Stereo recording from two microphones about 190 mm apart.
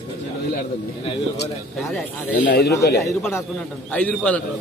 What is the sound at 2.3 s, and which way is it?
Speech, 55° left (ahead or behind).